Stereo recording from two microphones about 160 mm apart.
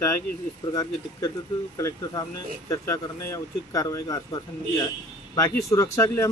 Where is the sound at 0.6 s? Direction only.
25° left (ahead or behind).